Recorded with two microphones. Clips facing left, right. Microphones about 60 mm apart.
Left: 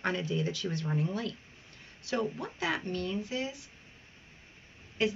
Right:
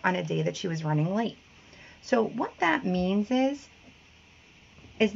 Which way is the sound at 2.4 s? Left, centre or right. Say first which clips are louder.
Right 8 dB; right.